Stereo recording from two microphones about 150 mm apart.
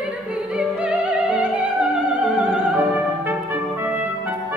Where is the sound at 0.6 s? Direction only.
5° right (ahead or behind).